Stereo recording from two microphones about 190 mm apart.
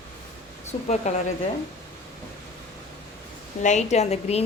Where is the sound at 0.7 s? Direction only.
35° left (ahead or behind).